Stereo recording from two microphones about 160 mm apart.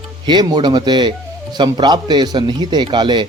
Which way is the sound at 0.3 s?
25° right (ahead or behind).